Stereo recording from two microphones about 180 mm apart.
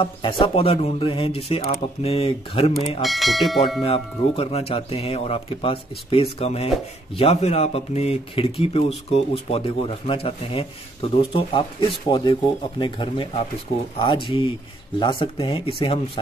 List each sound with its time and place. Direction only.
0.0 s speech: 30° left (ahead or behind)
3.0 s speech: centre (ahead or behind)
3.8 s speech: 30° left (ahead or behind)